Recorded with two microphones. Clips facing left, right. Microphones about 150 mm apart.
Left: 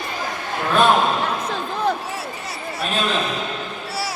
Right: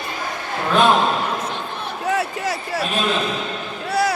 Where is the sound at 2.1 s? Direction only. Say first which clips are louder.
Right 8 dB; 80° right.